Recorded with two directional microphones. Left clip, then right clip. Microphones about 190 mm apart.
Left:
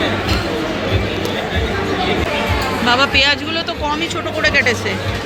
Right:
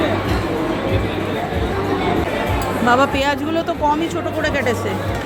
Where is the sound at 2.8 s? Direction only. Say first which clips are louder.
Even; 35° right (ahead or behind).